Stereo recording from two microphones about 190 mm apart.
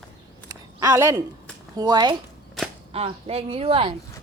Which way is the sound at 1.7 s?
20° right (ahead or behind).